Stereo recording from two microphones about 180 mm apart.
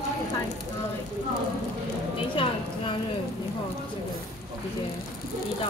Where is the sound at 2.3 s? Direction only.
30° left (ahead or behind).